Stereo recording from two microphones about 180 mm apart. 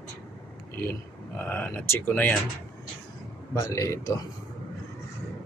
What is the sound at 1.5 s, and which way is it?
Speech, 10° left (ahead or behind).